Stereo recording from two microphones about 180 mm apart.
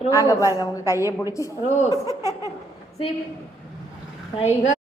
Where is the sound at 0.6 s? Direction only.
15° left (ahead or behind).